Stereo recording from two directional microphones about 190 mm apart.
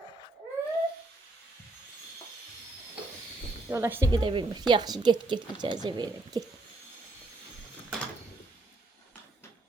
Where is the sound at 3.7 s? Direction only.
15° right (ahead or behind).